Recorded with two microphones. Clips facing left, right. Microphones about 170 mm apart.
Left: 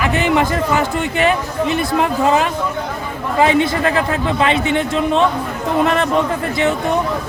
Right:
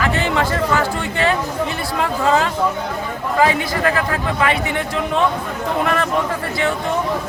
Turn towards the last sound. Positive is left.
turn(degrees=20)  # may be behind; listen again after turning